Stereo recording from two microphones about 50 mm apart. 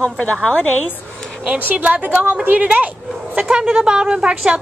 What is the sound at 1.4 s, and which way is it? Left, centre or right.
Speech, right.